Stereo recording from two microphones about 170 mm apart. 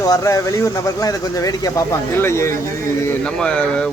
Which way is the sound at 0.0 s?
20° left (ahead or behind).